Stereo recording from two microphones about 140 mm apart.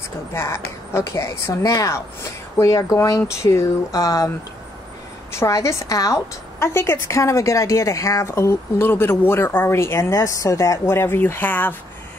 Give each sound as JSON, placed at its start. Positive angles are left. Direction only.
{"t": 0.3, "sound": "a woman's voice", "side_deg": 20}
{"t": 5.3, "sound": "a woman's voice", "side_deg": 20}